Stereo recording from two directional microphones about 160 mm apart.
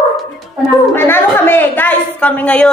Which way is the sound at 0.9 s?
15° left (ahead or behind).